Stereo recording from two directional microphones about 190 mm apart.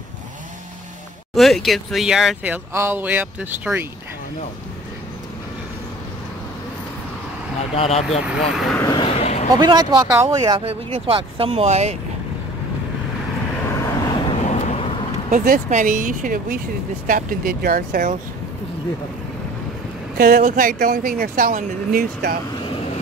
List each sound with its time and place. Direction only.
1.3 s speech: centre (ahead or behind)
7.7 s speech: 30° left (ahead or behind)
8.2 s speech: 5° right (ahead or behind)
8.9 s a sound: 30° left (ahead or behind)
9.6 s speech: 25° right (ahead or behind)
10.6 s speech: 30° right (ahead or behind)
13.7 s vehicle: 15° left (ahead or behind); by 14.9 s 35° left (ahead or behind)
15.3 s speech: 45° right (ahead or behind)
20.2 s speech: 50° right (ahead or behind)